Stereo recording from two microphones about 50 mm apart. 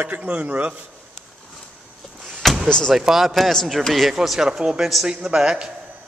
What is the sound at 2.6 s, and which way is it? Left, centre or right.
Speech, centre.